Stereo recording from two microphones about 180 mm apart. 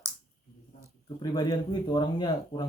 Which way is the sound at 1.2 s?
20° left (ahead or behind).